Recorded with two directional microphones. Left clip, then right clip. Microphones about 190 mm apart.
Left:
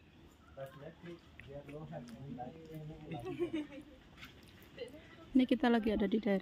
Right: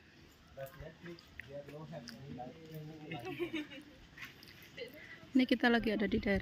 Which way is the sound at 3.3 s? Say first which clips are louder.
Left 2 dB; 55° left (ahead or behind).